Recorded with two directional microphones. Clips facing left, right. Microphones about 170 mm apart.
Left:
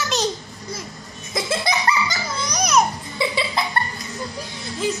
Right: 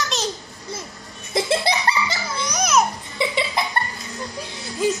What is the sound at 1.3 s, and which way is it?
Laughter, 30° right (ahead or behind).